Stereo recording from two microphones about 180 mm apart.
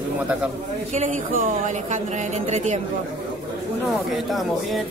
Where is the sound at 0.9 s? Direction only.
45° right (ahead or behind).